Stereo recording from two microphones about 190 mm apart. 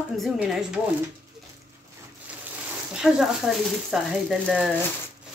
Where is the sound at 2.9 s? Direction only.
5° right (ahead or behind).